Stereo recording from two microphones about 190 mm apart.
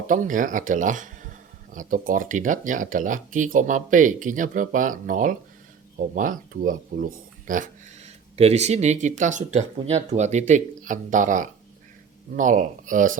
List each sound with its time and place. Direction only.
0.1 s speech: 45° right (ahead or behind)